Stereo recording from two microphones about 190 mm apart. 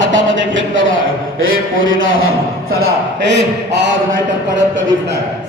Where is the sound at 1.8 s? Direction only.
90° right.